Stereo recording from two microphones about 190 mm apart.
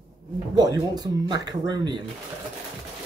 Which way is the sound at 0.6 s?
20° right (ahead or behind).